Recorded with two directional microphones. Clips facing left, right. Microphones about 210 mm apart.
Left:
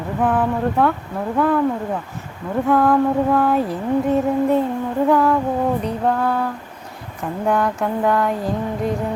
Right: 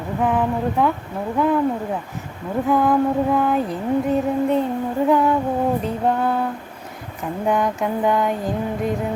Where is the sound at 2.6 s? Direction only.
Centre (ahead or behind).